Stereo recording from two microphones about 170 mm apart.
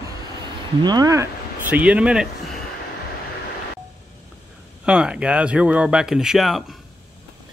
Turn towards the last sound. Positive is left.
turn(degrees=0)  # may be behind; listen again after turning